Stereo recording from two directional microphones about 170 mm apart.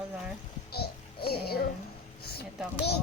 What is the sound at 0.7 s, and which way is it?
Music, 70° left (ahead or behind).